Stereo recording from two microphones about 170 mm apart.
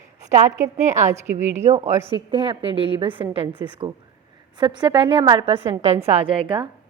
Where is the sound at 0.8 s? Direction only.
45° right (ahead or behind).